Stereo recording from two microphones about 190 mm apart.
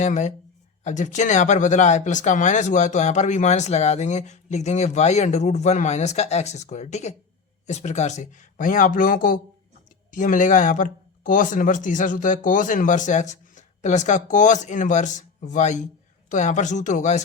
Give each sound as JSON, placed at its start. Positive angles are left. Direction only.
{"t": 0.0, "sound": "speech", "side_deg": 40}